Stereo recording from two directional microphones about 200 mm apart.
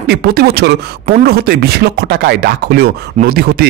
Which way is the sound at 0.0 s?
50° right (ahead or behind).